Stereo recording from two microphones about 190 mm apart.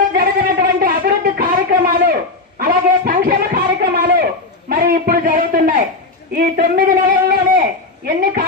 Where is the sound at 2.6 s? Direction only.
50° right (ahead or behind).